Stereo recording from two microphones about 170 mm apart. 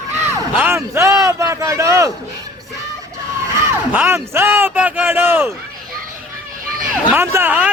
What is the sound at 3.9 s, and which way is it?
Speech, 15° right (ahead or behind).